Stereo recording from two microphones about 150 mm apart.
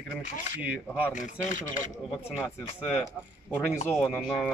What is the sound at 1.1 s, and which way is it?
Speech, 55° left (ahead or behind).